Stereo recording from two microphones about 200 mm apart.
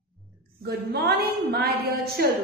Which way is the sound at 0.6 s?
50° right (ahead or behind).